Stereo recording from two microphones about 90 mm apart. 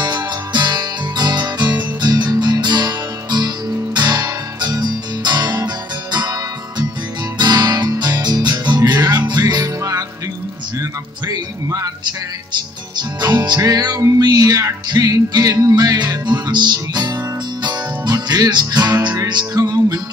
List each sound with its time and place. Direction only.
0.0 s music: 50° right (ahead or behind)
7.3 s music: 50° right (ahead or behind)
10.8 s speech: 40° right (ahead or behind)
13.2 s music: 50° right (ahead or behind)